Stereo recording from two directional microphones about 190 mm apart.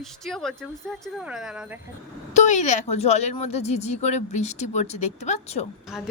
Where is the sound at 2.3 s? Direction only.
40° left (ahead or behind).